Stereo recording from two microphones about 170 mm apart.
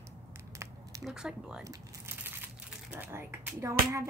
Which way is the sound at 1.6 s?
20° right (ahead or behind).